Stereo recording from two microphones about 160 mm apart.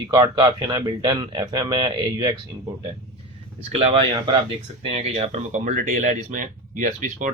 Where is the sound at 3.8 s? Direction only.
35° right (ahead or behind).